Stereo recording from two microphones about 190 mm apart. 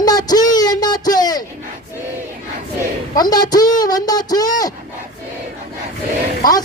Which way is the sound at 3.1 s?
20° left (ahead or behind).